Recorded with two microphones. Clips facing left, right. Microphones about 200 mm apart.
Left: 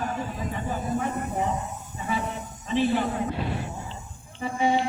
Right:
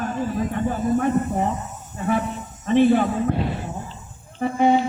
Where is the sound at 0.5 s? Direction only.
55° right (ahead or behind).